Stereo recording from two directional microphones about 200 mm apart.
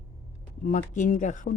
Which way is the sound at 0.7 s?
40° left (ahead or behind).